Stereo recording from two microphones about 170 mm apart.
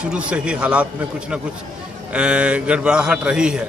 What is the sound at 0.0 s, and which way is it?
Speech, 5° right (ahead or behind).